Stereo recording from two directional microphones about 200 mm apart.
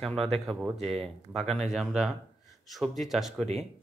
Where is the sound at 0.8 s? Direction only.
30° right (ahead or behind).